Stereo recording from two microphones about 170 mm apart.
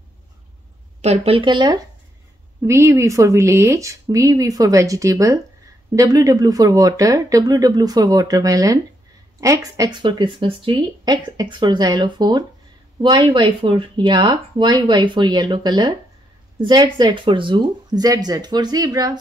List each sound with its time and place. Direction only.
1.0 s a woman's voice: 35° right (ahead or behind)
2.6 s speech: 15° right (ahead or behind)